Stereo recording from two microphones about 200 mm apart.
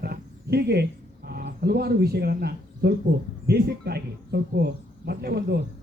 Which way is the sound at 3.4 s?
50° right (ahead or behind).